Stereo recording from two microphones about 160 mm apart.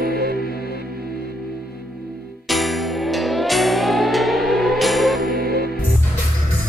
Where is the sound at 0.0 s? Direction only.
75° right (ahead or behind).